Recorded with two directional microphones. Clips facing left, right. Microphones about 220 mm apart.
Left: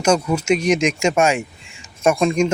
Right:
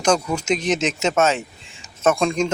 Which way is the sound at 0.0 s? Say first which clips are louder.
Left 2 dB; 10° left (ahead or behind).